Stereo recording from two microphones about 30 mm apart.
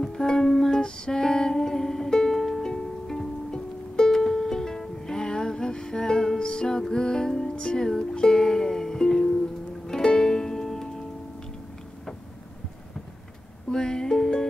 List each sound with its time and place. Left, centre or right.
0.0 s music: centre
13.7 s music: left